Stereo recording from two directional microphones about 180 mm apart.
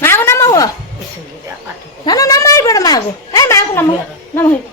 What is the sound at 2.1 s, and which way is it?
A woman's voice, 20° left (ahead or behind).